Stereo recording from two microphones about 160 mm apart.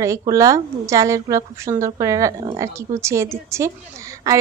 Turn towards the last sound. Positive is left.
turn(degrees=-20)  # may be behind; listen again after turning